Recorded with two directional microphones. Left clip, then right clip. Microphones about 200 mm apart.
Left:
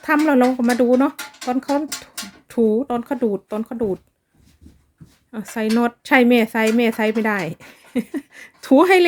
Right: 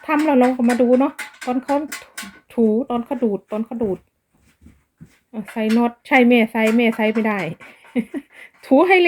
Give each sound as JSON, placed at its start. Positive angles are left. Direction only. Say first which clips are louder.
{"t": 0.0, "sound": "speech", "louder": "even", "side_deg": 15}
{"t": 5.3, "sound": "speech", "louder": "even", "side_deg": 20}